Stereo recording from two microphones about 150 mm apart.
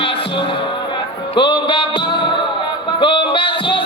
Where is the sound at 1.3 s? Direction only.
30° left (ahead or behind).